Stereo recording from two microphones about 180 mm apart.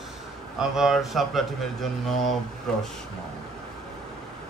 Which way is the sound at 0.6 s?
Centre (ahead or behind).